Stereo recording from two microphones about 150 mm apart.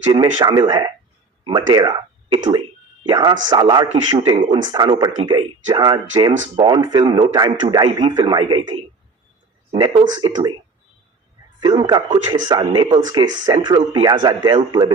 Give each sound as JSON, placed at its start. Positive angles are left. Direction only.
{"t": 0.1, "sound": "speech", "side_deg": -30}
{"t": 9.8, "sound": "speech", "side_deg": -30}
{"t": 11.6, "sound": "speech", "side_deg": -30}